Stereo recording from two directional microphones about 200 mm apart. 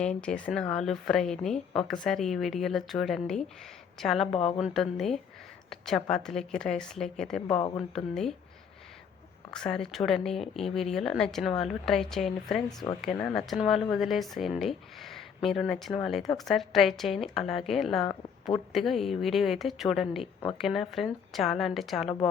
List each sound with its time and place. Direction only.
0.0 s speech: 5° left (ahead or behind)
9.5 s speech: 5° left (ahead or behind)
12.6 s speech: 20° left (ahead or behind)
13.0 s speech: 5° left (ahead or behind)
18.0 s a woman's voice: 20° left (ahead or behind)
18.7 s speech: centre (ahead or behind)